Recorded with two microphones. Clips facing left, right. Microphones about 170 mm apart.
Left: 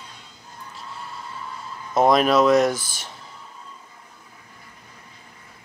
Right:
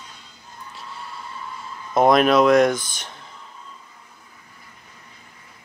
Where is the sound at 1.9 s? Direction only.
Centre (ahead or behind).